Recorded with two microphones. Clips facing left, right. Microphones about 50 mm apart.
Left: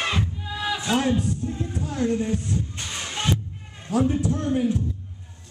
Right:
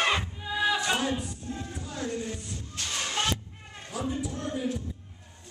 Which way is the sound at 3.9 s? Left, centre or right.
Left.